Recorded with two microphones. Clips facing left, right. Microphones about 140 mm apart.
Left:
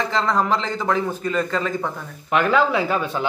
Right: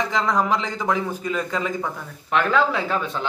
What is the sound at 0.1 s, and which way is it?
A man's voice, 10° right (ahead or behind).